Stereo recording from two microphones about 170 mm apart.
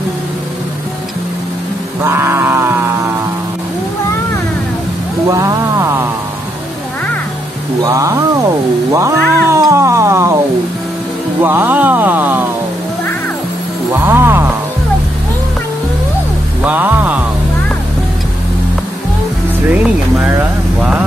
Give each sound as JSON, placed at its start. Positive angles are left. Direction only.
{"t": 2.0, "sound": "a sound", "side_deg": -15}
{"t": 5.3, "sound": "speech", "side_deg": -15}
{"t": 7.8, "sound": "speech", "side_deg": -20}
{"t": 8.9, "sound": "cat", "side_deg": -20}
{"t": 11.4, "sound": "speech", "side_deg": -10}
{"t": 13.9, "sound": "music", "side_deg": -15}
{"t": 16.6, "sound": "music", "side_deg": -10}
{"t": 19.7, "sound": "a sound", "side_deg": -10}